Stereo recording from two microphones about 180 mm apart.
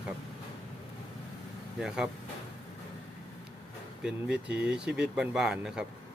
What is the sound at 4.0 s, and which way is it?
Speech, 5° right (ahead or behind).